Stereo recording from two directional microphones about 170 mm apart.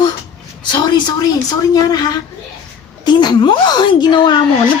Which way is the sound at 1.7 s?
25° left (ahead or behind).